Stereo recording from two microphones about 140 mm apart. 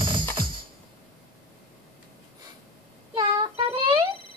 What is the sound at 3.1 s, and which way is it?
Child singing, 35° right (ahead or behind).